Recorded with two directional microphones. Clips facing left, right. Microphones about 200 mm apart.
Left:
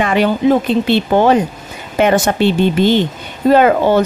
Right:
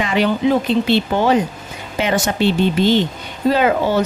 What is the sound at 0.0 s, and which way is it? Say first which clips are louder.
A woman's voice: left 3 dB; 50° left (ahead or behind).